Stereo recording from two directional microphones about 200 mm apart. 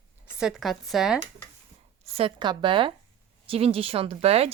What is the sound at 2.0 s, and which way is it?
Speech, 30° right (ahead or behind).